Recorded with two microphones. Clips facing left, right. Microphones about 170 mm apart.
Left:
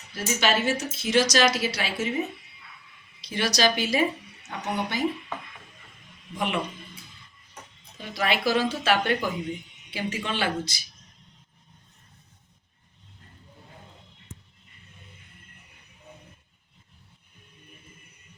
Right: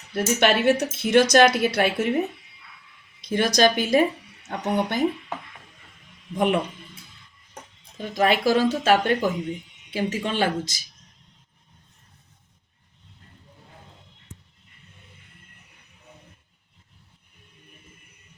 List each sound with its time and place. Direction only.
0.1 s speech: 60° right (ahead or behind)
3.2 s speech: 50° right (ahead or behind)
6.3 s speech: 50° right (ahead or behind)
7.9 s speech: 45° right (ahead or behind)